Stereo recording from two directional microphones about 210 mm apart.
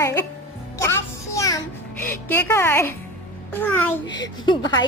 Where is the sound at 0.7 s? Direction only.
15° left (ahead or behind).